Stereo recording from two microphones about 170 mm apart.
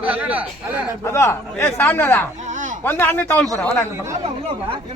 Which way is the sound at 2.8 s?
10° left (ahead or behind).